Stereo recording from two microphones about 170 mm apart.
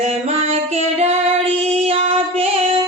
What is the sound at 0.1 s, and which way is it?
Music, 40° right (ahead or behind).